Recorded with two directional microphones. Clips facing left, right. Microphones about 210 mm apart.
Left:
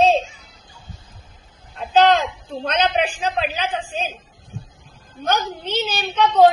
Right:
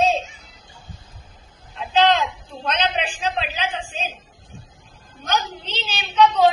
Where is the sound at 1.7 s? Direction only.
50° left (ahead or behind).